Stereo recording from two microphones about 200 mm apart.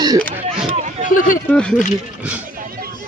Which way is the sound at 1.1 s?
40° left (ahead or behind).